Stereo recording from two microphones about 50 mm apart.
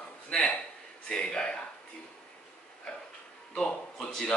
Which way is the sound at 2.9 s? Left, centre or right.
Centre.